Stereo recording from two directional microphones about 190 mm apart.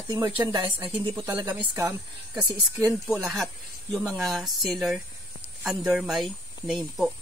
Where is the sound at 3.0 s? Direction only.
5° right (ahead or behind).